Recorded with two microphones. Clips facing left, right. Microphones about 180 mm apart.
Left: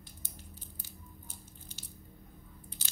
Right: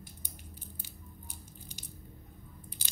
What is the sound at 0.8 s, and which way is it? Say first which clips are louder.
Squish: right 1 dB; 15° right (ahead or behind).